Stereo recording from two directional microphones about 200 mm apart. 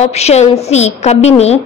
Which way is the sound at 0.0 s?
30° left (ahead or behind).